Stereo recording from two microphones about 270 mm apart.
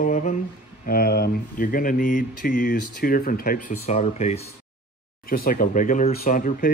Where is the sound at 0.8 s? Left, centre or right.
Left.